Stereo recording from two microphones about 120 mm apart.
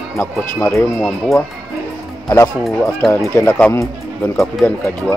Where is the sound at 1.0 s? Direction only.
5° left (ahead or behind).